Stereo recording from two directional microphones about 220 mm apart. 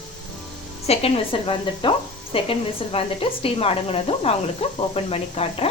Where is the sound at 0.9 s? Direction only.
25° left (ahead or behind).